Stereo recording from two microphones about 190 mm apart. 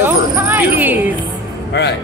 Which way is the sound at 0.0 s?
10° right (ahead or behind).